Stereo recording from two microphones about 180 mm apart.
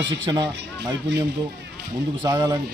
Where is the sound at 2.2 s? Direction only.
20° right (ahead or behind).